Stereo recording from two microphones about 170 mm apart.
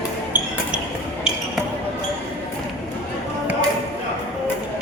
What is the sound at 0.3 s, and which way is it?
Basketball bounce, 10° right (ahead or behind).